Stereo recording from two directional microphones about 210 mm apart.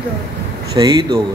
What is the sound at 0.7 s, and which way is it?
Speech, 20° right (ahead or behind).